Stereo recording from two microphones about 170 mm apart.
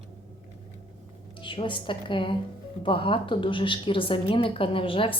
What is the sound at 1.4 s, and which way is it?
A woman's voice, 30° left (ahead or behind).